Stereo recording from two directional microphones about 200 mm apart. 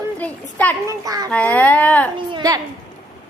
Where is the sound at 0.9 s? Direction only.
20° right (ahead or behind).